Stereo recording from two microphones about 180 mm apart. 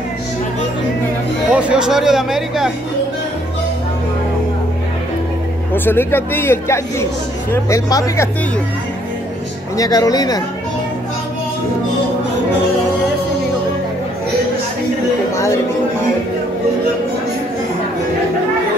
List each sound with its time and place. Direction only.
1.5 s speech: 5° right (ahead or behind)
5.7 s speech: 10° left (ahead or behind)
9.8 s speech: 20° left (ahead or behind)
15.3 s a sound: 15° left (ahead or behind)